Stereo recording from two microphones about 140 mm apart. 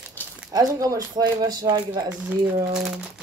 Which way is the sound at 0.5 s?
25° right (ahead or behind).